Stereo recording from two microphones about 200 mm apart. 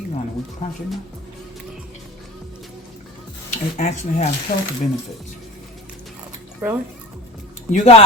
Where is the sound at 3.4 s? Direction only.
35° left (ahead or behind).